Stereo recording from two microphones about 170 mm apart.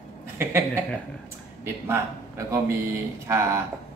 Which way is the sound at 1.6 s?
15° right (ahead or behind).